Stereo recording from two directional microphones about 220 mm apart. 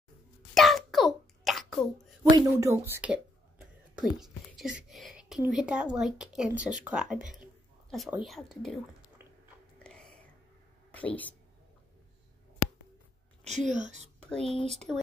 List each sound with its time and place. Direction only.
0.6 s a sound: centre (ahead or behind)
2.2 s speech: 15° right (ahead or behind); by 8.8 s centre (ahead or behind)
10.9 s speech: 5° left (ahead or behind)
13.7 s speech: 35° right (ahead or behind)
14.3 s speech: centre (ahead or behind)